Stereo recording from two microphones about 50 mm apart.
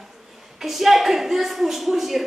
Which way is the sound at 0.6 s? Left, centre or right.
Centre.